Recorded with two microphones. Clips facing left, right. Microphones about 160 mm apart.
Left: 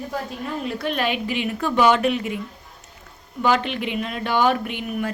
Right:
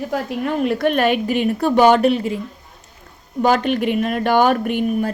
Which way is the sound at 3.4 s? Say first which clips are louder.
Right 5 dB; 45° right (ahead or behind).